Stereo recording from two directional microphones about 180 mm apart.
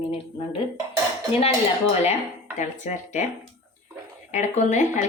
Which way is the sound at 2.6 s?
40° left (ahead or behind).